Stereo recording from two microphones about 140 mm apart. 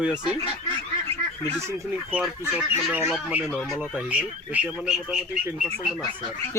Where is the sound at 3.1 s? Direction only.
10° right (ahead or behind).